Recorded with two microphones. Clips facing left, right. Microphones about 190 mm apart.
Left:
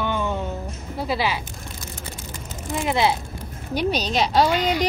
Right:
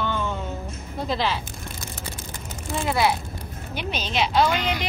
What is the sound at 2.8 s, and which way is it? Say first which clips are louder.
Speech: left 1 dB; 20° left (ahead or behind).